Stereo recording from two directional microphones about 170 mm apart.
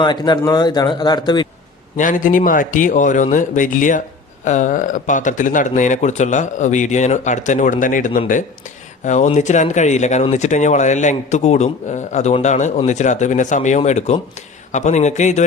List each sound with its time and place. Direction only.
0.0 s speech: 25° left (ahead or behind)
2.0 s speech: 50° left (ahead or behind)